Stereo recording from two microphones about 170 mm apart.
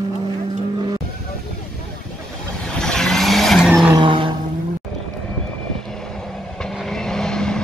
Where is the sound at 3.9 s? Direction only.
30° right (ahead or behind).